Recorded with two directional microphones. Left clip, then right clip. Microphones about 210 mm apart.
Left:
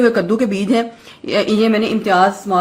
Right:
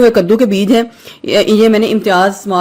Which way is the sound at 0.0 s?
40° right (ahead or behind).